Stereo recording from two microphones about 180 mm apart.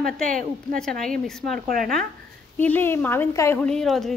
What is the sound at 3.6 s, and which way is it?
Speech, 5° left (ahead or behind).